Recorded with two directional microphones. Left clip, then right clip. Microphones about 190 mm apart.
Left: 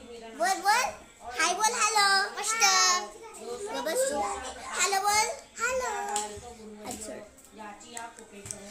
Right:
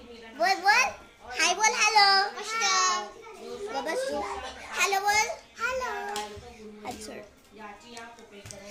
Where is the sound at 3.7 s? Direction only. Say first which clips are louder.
Left 1 dB; centre (ahead or behind).